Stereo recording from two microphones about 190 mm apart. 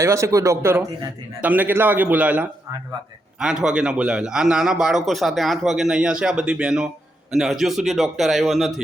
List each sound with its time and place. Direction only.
0.0 s a man's voice: 15° right (ahead or behind)